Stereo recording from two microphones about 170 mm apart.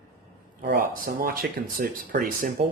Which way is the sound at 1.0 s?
55° right (ahead or behind).